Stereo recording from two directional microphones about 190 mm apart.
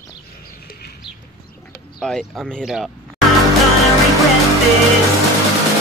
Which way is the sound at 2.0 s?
5° left (ahead or behind).